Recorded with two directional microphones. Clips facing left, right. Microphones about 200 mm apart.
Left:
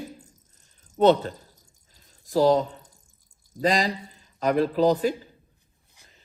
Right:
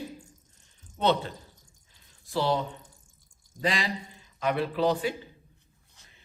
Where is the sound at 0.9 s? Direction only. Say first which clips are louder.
Left 7 dB; 45° left (ahead or behind).